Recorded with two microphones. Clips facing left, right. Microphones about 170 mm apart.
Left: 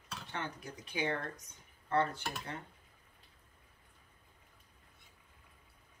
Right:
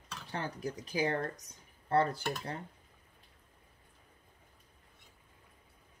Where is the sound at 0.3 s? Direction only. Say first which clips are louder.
Right 5 dB; 35° right (ahead or behind).